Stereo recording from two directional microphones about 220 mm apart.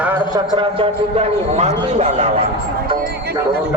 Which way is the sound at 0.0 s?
10° right (ahead or behind).